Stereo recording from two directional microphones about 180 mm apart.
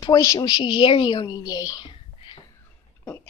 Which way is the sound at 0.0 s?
20° left (ahead or behind).